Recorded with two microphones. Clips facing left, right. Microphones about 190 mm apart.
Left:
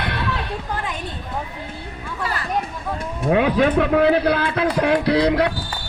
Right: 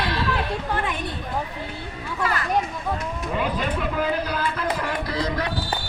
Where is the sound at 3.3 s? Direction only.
75° left (ahead or behind).